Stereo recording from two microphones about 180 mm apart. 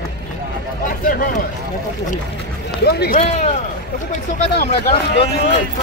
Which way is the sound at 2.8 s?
60° left (ahead or behind).